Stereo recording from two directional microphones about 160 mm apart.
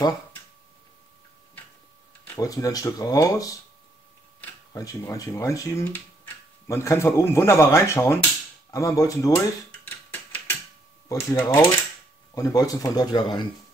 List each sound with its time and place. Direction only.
2.3 s speech: 20° left (ahead or behind)
4.7 s speech: 20° left (ahead or behind)
9.3 s a sound: 10° left (ahead or behind)
11.1 s speech: 20° left (ahead or behind)